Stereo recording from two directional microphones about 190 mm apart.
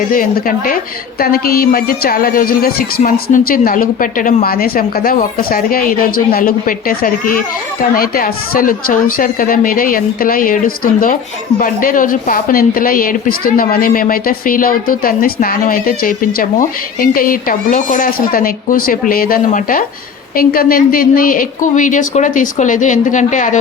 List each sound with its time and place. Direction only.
0.1 s speech: 45° left (ahead or behind)
11.6 s speech: 45° left (ahead or behind)